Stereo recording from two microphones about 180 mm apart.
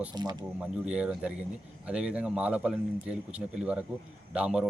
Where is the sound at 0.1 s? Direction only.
25° right (ahead or behind).